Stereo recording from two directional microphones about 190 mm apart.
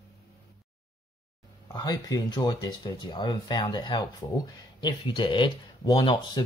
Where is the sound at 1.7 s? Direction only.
20° left (ahead or behind).